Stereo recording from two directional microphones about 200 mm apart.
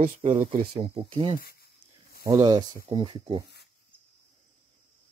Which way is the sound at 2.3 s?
25° right (ahead or behind).